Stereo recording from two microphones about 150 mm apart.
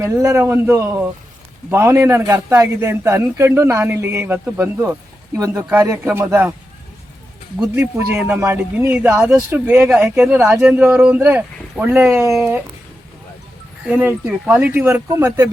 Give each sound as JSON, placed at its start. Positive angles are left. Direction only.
{"t": 0.0, "sound": "a man's voice", "side_deg": -20}
{"t": 7.8, "sound": "a man's voice", "side_deg": -15}
{"t": 13.8, "sound": "a man's voice", "side_deg": -15}